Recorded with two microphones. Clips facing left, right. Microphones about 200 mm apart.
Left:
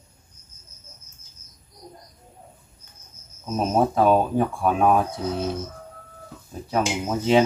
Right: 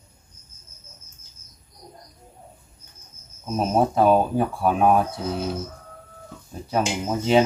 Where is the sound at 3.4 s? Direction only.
5° right (ahead or behind).